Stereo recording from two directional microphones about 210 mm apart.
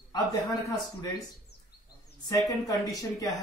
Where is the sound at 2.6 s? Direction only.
15° left (ahead or behind).